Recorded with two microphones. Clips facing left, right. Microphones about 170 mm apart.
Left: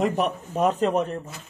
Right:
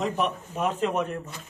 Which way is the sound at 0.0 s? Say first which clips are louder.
Left 3 dB; 40° left (ahead or behind).